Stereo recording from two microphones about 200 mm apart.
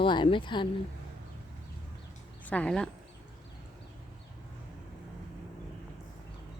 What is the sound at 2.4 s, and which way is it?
Speech, 5° left (ahead or behind).